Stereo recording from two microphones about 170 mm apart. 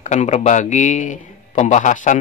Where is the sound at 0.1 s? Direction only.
45° left (ahead or behind).